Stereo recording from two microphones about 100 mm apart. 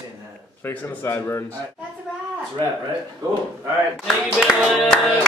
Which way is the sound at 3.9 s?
Centre (ahead or behind).